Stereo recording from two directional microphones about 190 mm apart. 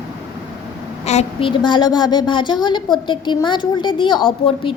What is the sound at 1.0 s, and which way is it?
A woman's voice, 30° left (ahead or behind).